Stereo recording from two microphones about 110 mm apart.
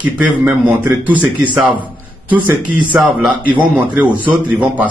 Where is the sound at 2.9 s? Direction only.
15° right (ahead or behind).